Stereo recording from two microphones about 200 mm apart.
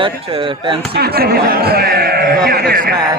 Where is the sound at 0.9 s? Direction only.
50° right (ahead or behind).